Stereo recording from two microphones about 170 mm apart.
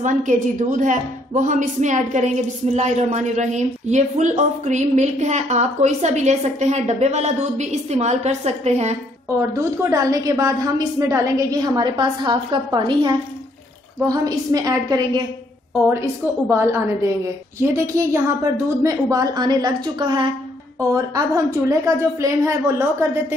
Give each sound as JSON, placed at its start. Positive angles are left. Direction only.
{"t": 0.0, "sound": "a woman's voice", "side_deg": -45}
{"t": 9.8, "sound": "a woman's voice", "side_deg": -20}
{"t": 16.4, "sound": "a woman's voice", "side_deg": -15}